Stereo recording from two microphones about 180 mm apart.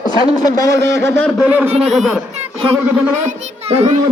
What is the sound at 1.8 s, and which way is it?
Speech, centre (ahead or behind).